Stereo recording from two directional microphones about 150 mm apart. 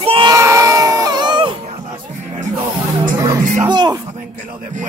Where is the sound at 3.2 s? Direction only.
25° right (ahead or behind).